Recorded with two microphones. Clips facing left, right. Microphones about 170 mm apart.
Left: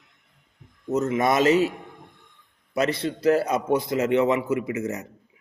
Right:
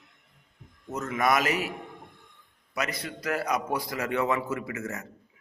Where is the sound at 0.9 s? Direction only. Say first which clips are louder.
Left 5 dB; 25° left (ahead or behind).